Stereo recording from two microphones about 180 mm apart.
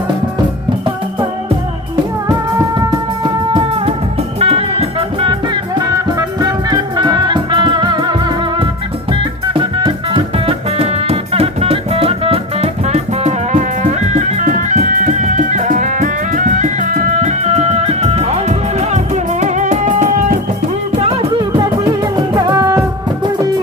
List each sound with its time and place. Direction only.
3.2 s music: 30° right (ahead or behind); by 20.4 s 45° right (ahead or behind)
21.0 s music: 35° right (ahead or behind)
22.0 s music: 20° right (ahead or behind)